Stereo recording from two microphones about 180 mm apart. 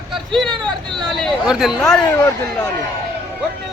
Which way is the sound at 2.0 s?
20° left (ahead or behind).